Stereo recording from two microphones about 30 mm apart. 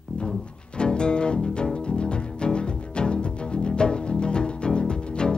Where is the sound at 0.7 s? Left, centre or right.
Left.